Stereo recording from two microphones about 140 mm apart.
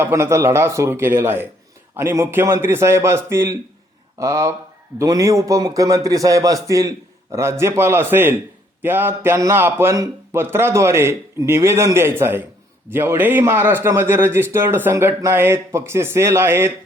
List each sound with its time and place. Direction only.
0.0 s a man's voice: 20° right (ahead or behind)